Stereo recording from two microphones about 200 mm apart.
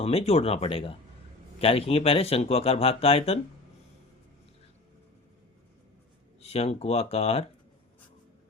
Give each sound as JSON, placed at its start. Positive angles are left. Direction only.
{"t": 0.0, "sound": "speech", "side_deg": 30}
{"t": 6.4, "sound": "speech", "side_deg": 30}